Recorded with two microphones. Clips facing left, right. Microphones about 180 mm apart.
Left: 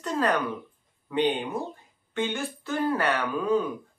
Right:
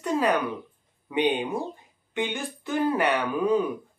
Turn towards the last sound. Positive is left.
turn(degrees=-20)  # may be behind; listen again after turning